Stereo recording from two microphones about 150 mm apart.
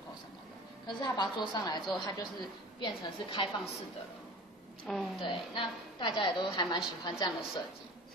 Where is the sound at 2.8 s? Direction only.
30° left (ahead or behind).